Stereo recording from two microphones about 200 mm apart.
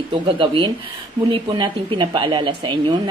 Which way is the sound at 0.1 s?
25° right (ahead or behind).